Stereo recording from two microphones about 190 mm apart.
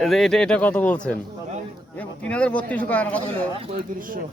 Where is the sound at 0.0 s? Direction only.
Centre (ahead or behind).